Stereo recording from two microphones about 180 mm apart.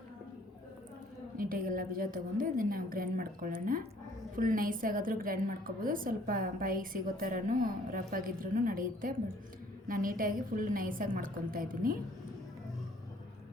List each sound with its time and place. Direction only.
1.4 s a woman's voice: 50° right (ahead or behind)